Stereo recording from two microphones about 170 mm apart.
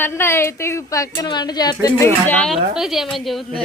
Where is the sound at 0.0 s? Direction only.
15° left (ahead or behind).